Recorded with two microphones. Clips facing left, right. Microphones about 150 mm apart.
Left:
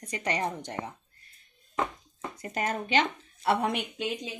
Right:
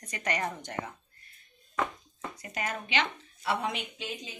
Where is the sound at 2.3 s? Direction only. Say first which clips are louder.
Left 5 dB; 45° left (ahead or behind).